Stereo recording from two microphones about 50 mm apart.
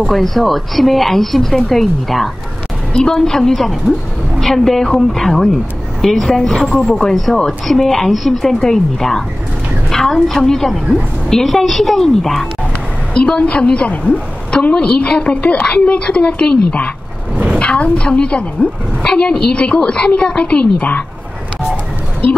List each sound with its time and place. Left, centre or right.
0.0 s a woman's voice: centre
2.9 s a woman's voice: centre
13.1 s a woman's voice: centre